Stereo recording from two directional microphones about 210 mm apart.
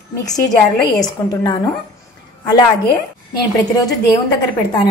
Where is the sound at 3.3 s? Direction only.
15° left (ahead or behind).